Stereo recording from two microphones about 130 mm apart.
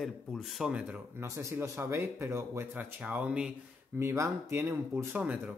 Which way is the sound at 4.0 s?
20° right (ahead or behind).